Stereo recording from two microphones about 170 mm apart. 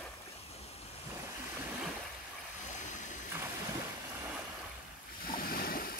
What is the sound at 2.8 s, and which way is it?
Stream, 45° left (ahead or behind).